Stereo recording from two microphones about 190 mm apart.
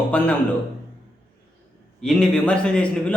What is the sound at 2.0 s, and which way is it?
A man's voice, 5° left (ahead or behind).